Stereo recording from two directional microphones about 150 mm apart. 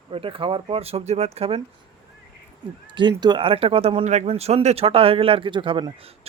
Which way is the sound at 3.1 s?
30° right (ahead or behind).